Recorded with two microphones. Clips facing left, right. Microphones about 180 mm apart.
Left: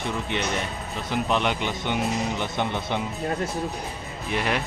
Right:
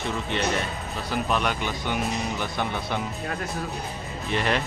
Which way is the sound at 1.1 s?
20° left (ahead or behind).